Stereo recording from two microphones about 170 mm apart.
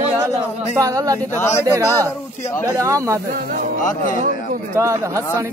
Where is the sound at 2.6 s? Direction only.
15° right (ahead or behind).